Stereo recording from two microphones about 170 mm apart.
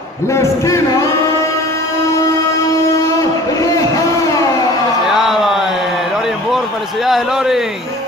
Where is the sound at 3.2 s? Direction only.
20° left (ahead or behind).